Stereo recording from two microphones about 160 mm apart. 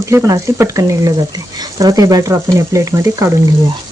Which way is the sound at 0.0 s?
20° right (ahead or behind).